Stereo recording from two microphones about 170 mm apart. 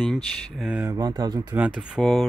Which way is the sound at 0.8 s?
25° right (ahead or behind).